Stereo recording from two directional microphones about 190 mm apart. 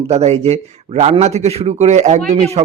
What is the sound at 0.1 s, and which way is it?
A man's voice, 35° right (ahead or behind).